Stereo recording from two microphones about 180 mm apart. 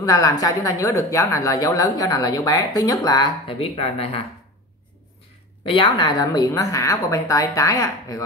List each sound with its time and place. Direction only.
0.0 s a woman's voice: 20° left (ahead or behind)
5.7 s a woman's voice: 25° left (ahead or behind)